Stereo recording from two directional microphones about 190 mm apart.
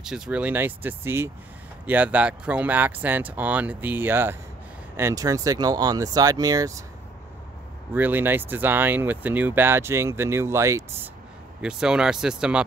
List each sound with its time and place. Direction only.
0.0 s speech: 5° right (ahead or behind)
7.9 s speech: 10° right (ahead or behind)
11.6 s speech: 5° right (ahead or behind)